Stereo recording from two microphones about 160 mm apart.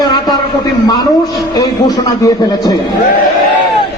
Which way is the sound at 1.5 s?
25° left (ahead or behind).